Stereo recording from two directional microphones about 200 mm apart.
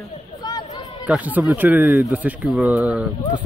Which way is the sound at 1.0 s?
5° right (ahead or behind).